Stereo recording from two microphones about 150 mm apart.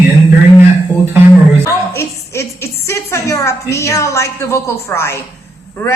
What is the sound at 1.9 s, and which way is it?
A woman's voice, 15° left (ahead or behind).